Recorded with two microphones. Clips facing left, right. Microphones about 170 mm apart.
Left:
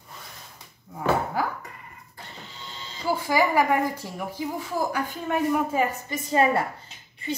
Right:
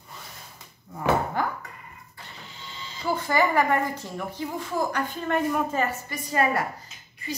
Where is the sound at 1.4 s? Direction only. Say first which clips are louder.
Even; 5° left (ahead or behind).